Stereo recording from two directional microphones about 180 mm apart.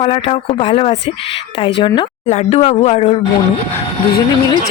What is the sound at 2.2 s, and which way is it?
Speech, 40° left (ahead or behind).